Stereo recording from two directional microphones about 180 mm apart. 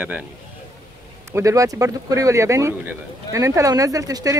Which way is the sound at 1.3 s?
20° right (ahead or behind).